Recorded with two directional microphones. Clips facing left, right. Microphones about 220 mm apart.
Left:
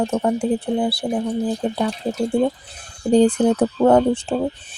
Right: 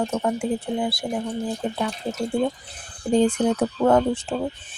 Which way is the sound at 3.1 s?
35° left (ahead or behind).